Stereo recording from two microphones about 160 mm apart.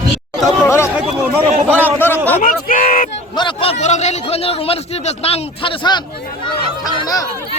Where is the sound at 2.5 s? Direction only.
60° left (ahead or behind).